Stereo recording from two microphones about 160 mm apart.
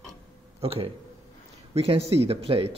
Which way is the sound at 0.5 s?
35° right (ahead or behind).